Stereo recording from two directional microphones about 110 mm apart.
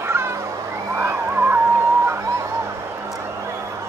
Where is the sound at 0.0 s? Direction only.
25° right (ahead or behind).